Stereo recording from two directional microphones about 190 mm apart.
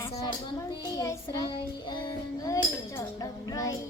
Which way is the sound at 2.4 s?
20° left (ahead or behind).